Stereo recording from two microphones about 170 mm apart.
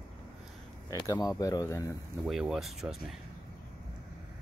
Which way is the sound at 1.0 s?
20° left (ahead or behind).